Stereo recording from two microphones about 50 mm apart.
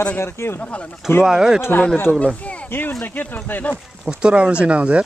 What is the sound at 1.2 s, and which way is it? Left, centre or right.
Speech, centre.